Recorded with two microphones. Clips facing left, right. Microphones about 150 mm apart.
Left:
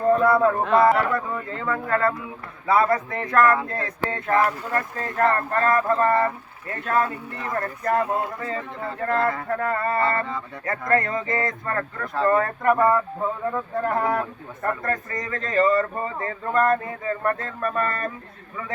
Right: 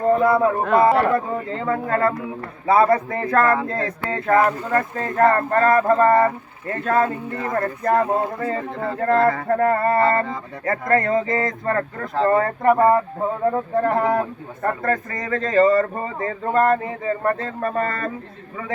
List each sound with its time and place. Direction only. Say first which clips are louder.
0.1 s speech: right 1 dB; 20° right (ahead or behind)
1.1 s speech: right 5 dB; 30° right (ahead or behind)
7.4 s speech: right 4 dB; 45° right (ahead or behind)